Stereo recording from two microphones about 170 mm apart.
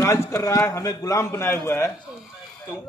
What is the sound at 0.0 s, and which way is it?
A man's voice, 20° left (ahead or behind).